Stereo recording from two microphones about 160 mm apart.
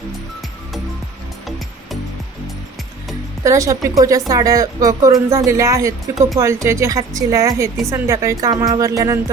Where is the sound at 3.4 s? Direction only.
20° right (ahead or behind).